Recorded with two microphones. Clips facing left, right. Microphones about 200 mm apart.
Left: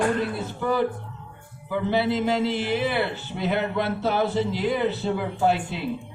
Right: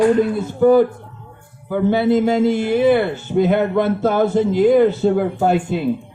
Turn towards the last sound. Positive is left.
turn(degrees=-50)  # may be behind; listen again after turning